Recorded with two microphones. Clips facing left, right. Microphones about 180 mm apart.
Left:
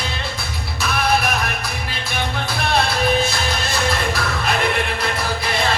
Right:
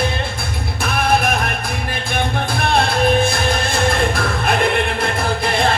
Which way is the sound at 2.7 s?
50° right (ahead or behind).